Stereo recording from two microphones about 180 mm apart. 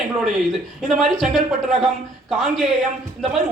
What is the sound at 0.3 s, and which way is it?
A man's voice, centre (ahead or behind).